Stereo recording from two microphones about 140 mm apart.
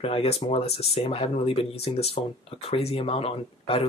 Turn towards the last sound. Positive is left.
turn(degrees=45)  # may be behind; listen again after turning